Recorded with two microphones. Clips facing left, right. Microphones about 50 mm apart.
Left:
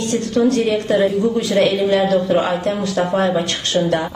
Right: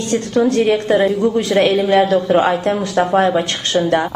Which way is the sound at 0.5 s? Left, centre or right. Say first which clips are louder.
Right 4 dB; right.